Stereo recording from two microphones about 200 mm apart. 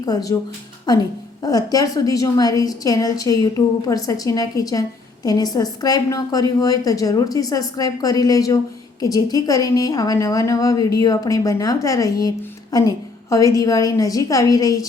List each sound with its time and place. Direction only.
0.0 s a woman's voice: 20° left (ahead or behind)